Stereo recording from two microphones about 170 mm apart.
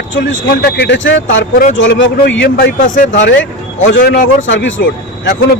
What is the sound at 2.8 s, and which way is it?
Speech, 50° left (ahead or behind).